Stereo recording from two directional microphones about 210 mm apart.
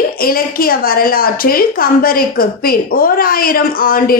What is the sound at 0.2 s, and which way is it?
A woman's voice, 45° left (ahead or behind).